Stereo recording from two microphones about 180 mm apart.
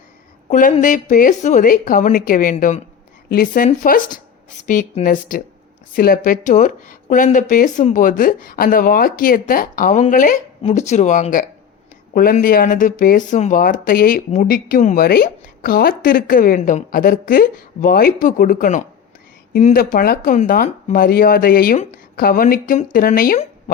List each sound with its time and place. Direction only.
0.5 s speech: 45° left (ahead or behind)